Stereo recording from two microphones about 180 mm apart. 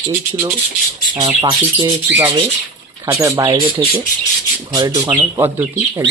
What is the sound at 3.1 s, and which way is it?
Speech, 15° right (ahead or behind).